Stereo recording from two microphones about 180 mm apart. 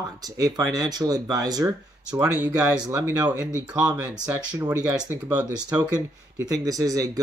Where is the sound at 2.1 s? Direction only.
10° right (ahead or behind).